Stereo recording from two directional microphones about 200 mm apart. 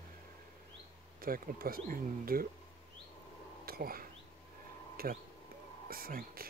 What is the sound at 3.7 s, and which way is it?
Speech, 50° right (ahead or behind).